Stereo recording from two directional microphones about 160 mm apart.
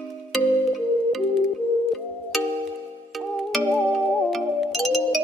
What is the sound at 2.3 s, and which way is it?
Music, centre (ahead or behind).